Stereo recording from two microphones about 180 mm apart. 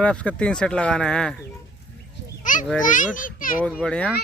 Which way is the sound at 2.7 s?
45° left (ahead or behind).